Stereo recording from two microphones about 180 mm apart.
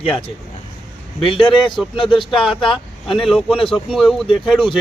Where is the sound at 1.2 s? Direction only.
30° left (ahead or behind).